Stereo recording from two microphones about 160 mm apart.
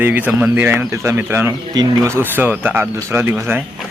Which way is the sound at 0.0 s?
10° right (ahead or behind).